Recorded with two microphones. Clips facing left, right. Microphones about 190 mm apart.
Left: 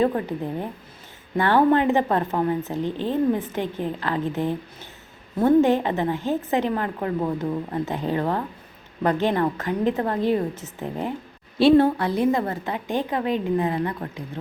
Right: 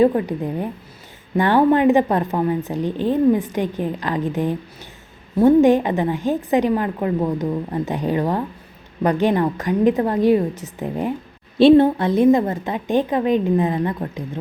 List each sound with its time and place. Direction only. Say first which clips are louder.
0.0 s a woman's voice: right 6 dB; 15° right (ahead or behind)